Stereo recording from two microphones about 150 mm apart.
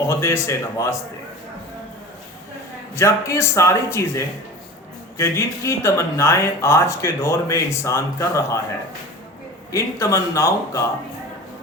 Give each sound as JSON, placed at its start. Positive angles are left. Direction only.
{"t": 0.0, "sound": "speech", "side_deg": 15}
{"t": 2.9, "sound": "speech", "side_deg": 20}
{"t": 9.7, "sound": "speech", "side_deg": 20}